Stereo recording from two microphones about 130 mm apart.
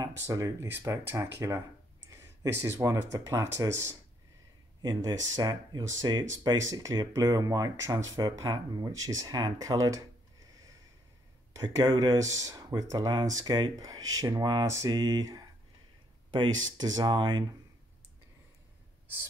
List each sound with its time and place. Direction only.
0.0 s speech: 25° right (ahead or behind)
5.3 s speech: 30° right (ahead or behind)
11.5 s speech: 30° right (ahead or behind)
16.9 s speech: 35° right (ahead or behind)